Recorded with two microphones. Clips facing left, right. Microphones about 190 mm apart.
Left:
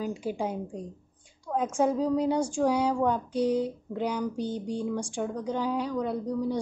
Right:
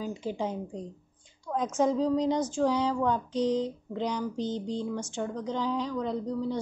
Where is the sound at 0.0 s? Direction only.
10° left (ahead or behind).